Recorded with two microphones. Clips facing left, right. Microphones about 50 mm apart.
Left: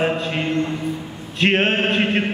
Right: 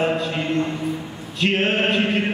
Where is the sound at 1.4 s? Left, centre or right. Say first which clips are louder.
Left 2 dB; left.